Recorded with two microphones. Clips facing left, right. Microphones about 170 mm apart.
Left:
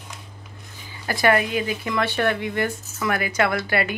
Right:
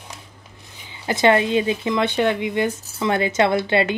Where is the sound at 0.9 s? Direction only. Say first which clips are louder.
Right 3 dB; 20° right (ahead or behind).